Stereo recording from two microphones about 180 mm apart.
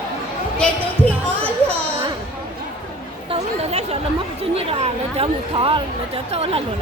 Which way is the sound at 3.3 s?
35° right (ahead or behind).